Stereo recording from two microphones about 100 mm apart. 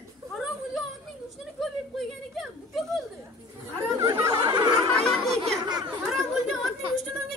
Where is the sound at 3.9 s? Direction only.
35° right (ahead or behind).